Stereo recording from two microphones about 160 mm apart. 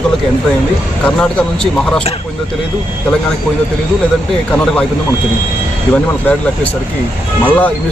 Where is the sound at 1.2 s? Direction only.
5° left (ahead or behind).